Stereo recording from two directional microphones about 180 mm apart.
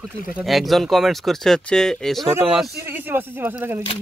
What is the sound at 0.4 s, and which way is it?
Speech, centre (ahead or behind).